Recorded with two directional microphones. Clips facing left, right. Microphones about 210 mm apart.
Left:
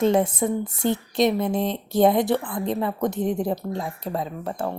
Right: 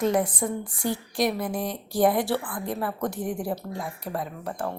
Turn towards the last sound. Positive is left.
turn(degrees=25)  # may be behind; listen again after turning